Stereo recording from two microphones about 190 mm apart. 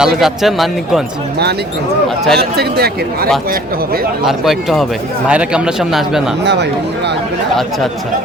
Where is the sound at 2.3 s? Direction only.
55° right (ahead or behind).